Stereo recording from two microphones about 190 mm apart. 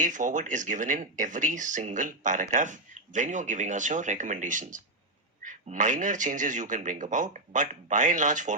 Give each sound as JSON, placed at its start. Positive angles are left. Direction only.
{"t": 0.0, "sound": "speech", "side_deg": -40}